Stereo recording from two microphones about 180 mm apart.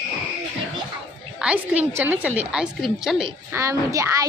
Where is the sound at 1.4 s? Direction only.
5° right (ahead or behind).